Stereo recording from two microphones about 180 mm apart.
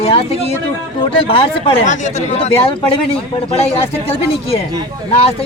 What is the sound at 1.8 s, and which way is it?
Speech, 40° left (ahead or behind).